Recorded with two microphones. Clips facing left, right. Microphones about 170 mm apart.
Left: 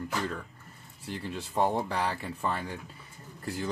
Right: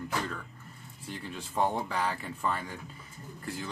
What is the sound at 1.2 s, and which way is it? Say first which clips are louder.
Speech: left 2 dB; 35° left (ahead or behind).